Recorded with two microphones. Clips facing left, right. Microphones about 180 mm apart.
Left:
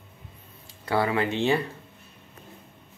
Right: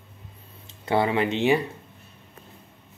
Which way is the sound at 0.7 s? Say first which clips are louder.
Right 2 dB; 20° right (ahead or behind).